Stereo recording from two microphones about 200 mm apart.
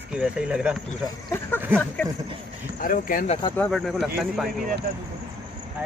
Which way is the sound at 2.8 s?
45° left (ahead or behind).